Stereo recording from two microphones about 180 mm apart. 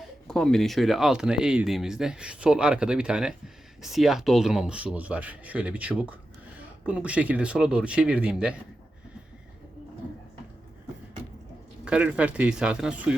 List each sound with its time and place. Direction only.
0.3 s speech: 5° left (ahead or behind)
11.9 s speech: 5° right (ahead or behind)